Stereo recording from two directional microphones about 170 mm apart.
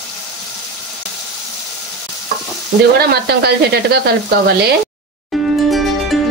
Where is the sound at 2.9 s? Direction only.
70° right (ahead or behind).